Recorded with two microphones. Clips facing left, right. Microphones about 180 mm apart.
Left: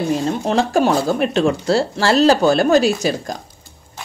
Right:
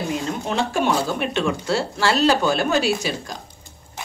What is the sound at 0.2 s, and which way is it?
Speech, 35° left (ahead or behind).